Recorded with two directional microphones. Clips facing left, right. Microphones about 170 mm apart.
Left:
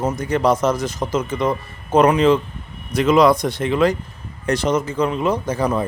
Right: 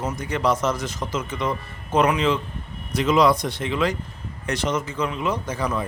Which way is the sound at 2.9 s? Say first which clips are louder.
Left 4 dB; 50° left (ahead or behind).